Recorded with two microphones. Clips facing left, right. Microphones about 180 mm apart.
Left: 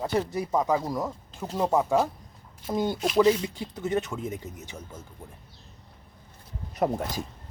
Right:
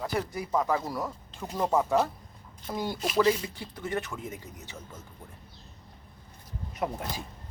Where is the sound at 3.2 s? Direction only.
20° left (ahead or behind).